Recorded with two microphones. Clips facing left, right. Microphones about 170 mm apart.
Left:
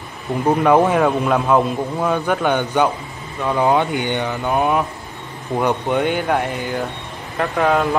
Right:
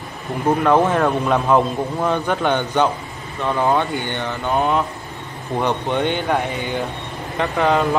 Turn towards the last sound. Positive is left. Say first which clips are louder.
# even
turn(degrees=0)  # may be behind; listen again after turning